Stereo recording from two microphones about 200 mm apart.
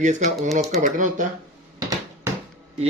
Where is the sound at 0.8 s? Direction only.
40° right (ahead or behind).